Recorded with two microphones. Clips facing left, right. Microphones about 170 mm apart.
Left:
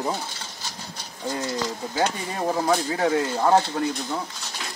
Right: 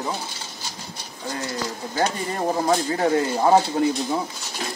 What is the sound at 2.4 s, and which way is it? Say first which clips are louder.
Speech: right 1 dB; 10° right (ahead or behind).